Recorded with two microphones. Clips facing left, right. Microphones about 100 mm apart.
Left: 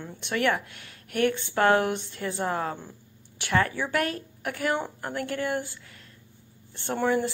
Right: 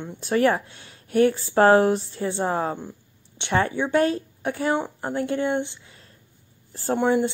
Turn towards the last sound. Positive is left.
turn(degrees=-20)  # may be behind; listen again after turning